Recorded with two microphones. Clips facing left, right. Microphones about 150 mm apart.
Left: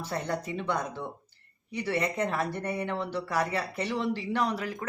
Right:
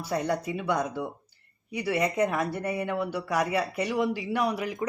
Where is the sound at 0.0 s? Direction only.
10° right (ahead or behind).